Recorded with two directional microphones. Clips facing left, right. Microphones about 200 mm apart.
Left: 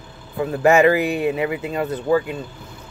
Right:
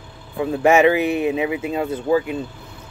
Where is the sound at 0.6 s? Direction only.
25° right (ahead or behind).